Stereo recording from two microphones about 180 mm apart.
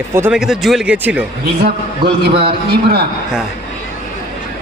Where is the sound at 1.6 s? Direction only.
65° right (ahead or behind).